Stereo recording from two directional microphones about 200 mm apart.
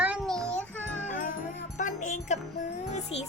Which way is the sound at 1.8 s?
40° left (ahead or behind).